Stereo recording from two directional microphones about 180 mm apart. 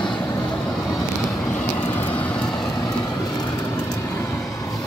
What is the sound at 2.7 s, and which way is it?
Vehicle, 20° left (ahead or behind).